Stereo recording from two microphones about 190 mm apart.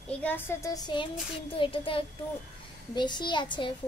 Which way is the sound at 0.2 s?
10° left (ahead or behind).